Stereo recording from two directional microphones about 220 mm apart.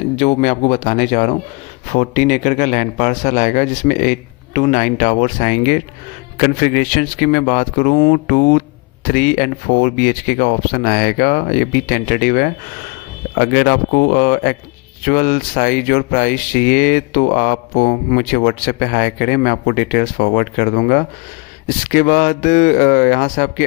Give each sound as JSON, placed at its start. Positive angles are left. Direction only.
{"t": 0.2, "sound": "speech", "side_deg": 30}